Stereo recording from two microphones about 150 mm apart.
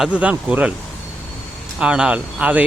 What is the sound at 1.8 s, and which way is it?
Speech, 5° right (ahead or behind).